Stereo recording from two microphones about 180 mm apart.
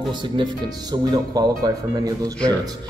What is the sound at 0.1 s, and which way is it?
A man's voice, 25° right (ahead or behind).